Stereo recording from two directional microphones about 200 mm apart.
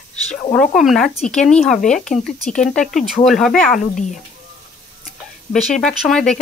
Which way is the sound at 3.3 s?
Centre (ahead or behind).